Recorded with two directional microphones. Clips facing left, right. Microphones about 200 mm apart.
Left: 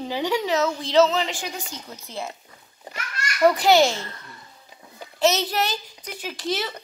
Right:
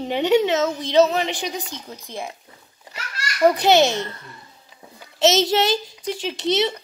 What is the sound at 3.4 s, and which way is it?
Speech, 20° right (ahead or behind).